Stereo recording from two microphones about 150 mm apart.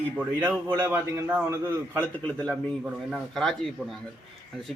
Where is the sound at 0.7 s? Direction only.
15° right (ahead or behind).